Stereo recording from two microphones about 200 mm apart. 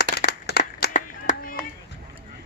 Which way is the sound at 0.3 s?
50° left (ahead or behind).